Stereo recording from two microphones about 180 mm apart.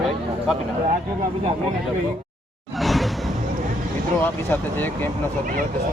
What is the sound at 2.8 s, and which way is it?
Whoosh, centre (ahead or behind).